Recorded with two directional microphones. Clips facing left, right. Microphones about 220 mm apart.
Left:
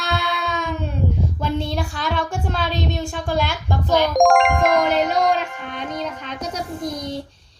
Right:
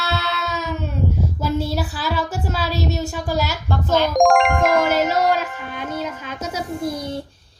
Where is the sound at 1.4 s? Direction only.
5° right (ahead or behind).